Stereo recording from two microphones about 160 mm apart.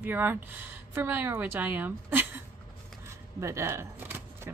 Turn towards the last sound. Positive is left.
turn(degrees=-15)  # may be behind; listen again after turning